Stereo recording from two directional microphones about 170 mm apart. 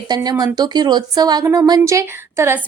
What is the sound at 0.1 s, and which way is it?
Speech, 25° right (ahead or behind).